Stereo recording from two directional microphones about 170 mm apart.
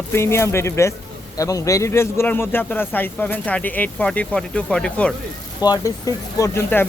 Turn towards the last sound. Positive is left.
turn(degrees=15)  # may be behind; listen again after turning